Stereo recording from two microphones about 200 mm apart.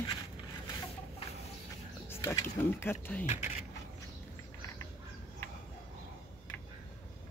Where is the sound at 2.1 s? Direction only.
10° left (ahead or behind).